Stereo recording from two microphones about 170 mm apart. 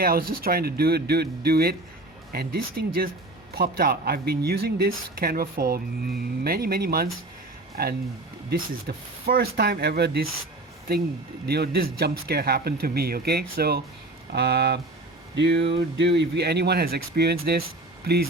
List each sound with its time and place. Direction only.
0.0 s speech: 60° right (ahead or behind)
11.4 s speech: 70° right (ahead or behind)
15.4 s speech: 90° right; by 18.3 s 65° right (ahead or behind)